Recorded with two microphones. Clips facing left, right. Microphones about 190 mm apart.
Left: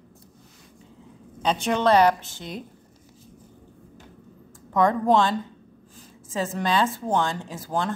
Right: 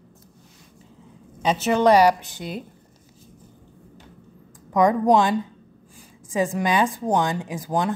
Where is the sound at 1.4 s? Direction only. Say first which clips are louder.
Right 3 dB; 5° right (ahead or behind).